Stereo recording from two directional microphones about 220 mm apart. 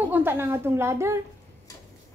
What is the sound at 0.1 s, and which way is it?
A woman's voice, 10° right (ahead or behind).